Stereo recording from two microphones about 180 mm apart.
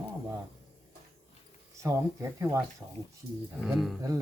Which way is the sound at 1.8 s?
15° right (ahead or behind).